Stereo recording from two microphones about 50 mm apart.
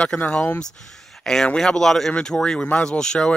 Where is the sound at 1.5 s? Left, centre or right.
Centre.